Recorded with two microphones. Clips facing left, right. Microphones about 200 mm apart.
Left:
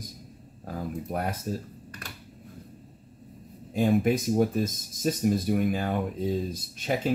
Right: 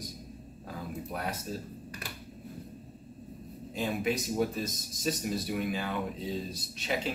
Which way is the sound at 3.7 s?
50° left (ahead or behind).